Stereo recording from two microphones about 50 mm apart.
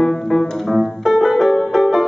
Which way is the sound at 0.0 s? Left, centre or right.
Centre.